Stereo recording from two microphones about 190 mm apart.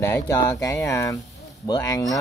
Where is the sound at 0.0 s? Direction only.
15° left (ahead or behind).